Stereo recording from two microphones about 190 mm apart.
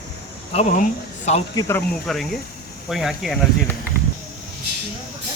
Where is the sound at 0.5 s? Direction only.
40° left (ahead or behind).